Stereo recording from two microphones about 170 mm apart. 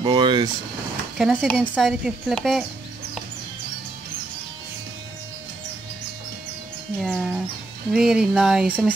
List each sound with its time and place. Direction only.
0.0 s vehicle: 25° right (ahead or behind)
1.1 s speech: 5° right (ahead or behind)
7.0 s speech: centre (ahead or behind)